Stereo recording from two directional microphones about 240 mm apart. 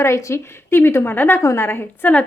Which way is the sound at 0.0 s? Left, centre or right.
Centre.